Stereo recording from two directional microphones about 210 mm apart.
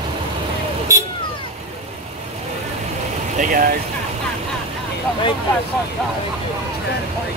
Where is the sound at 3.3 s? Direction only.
40° right (ahead or behind).